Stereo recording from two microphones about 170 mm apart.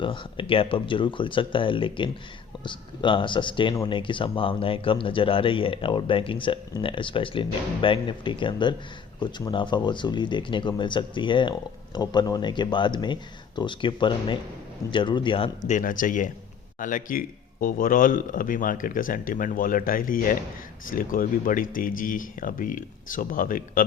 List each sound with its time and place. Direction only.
0.0 s speech: 30° left (ahead or behind)
15.6 s a man's voice: 50° left (ahead or behind)